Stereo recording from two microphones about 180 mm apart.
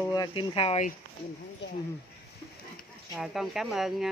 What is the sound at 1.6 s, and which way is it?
Speech, 75° left (ahead or behind).